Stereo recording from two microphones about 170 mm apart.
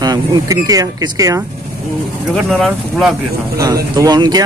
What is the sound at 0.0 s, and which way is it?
Speech, 25° right (ahead or behind).